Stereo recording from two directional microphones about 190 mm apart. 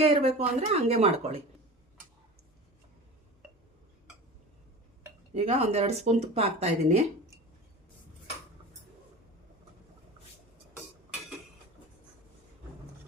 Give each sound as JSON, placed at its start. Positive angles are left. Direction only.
{"t": 0.0, "sound": "speech", "side_deg": -30}
{"t": 5.3, "sound": "speech", "side_deg": -35}